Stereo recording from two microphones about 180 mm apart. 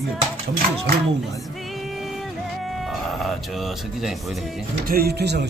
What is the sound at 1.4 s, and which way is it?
Music, centre (ahead or behind).